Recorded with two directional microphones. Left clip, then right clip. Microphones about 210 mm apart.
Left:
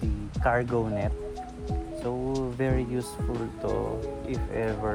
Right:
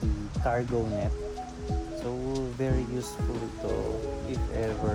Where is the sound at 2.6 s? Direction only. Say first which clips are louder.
Left 3 dB; 25° left (ahead or behind).